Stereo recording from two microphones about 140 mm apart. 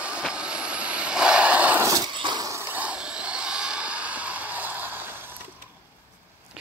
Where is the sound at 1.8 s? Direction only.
25° right (ahead or behind).